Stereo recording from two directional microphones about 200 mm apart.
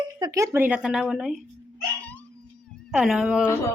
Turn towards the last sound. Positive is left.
turn(degrees=-5)  # may be behind; listen again after turning